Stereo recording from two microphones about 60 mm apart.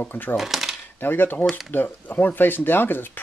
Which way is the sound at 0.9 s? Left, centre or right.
Left.